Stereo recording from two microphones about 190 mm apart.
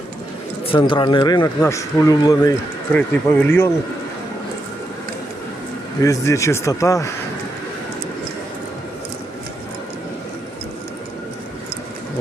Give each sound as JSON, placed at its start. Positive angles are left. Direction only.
{"t": 0.7, "sound": "a man's voice", "side_deg": 25}
{"t": 6.0, "sound": "a man's voice", "side_deg": 15}